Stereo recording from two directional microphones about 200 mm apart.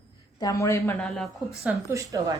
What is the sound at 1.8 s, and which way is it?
Speech, 15° right (ahead or behind).